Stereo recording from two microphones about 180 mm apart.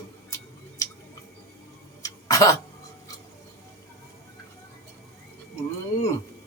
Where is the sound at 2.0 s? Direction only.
20° left (ahead or behind).